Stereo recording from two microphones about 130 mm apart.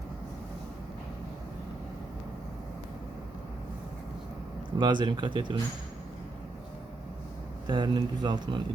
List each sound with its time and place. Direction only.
4.8 s speech: 35° right (ahead or behind)
7.7 s speech: 35° right (ahead or behind)